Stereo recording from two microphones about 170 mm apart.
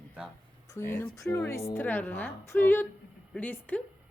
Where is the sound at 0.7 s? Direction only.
15° left (ahead or behind).